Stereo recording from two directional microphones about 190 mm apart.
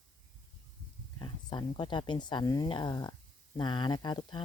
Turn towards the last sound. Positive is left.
turn(degrees=20)  # may be behind; listen again after turning